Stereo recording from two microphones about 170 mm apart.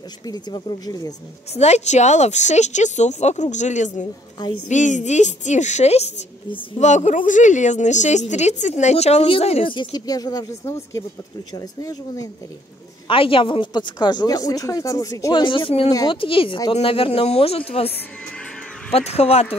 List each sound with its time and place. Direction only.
0.3 s speech: 25° left (ahead or behind)
1.5 s a woman's voice: 40° left (ahead or behind); by 12.3 s 20° left (ahead or behind)
13.1 s speech: 30° left (ahead or behind)
18.9 s speech: 35° left (ahead or behind)